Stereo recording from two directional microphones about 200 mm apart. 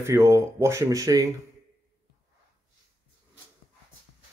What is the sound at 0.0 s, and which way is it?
Speech, 15° right (ahead or behind).